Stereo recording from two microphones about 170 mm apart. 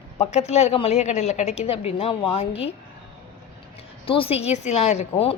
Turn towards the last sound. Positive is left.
turn(degrees=40)  # may be behind; listen again after turning